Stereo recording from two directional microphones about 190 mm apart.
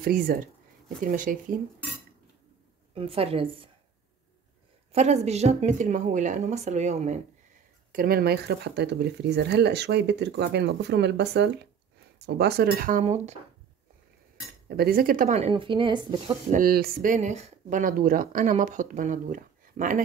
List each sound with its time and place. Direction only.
0.0 s speech: 50° right (ahead or behind)
2.9 s a woman's voice: 30° right (ahead or behind)
4.9 s a woman's voice: 35° right (ahead or behind)
7.9 s speech: 50° right (ahead or behind)
14.7 s a woman's voice: 55° right (ahead or behind); by 16.3 s 25° right (ahead or behind)
16.5 s speech: 50° right (ahead or behind)